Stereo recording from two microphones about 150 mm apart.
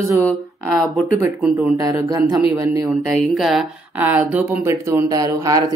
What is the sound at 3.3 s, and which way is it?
Speech, centre (ahead or behind).